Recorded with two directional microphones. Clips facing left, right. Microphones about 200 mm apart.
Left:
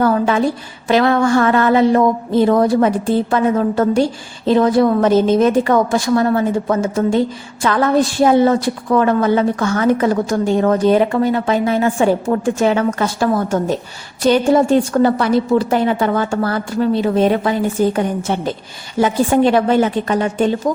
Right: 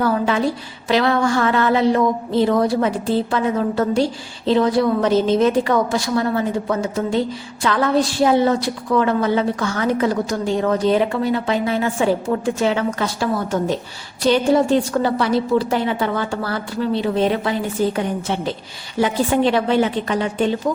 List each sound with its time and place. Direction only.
0.9 s a woman's voice: 50° left (ahead or behind)